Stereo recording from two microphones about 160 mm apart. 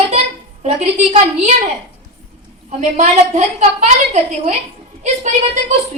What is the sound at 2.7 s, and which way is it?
A woman's voice, 45° right (ahead or behind).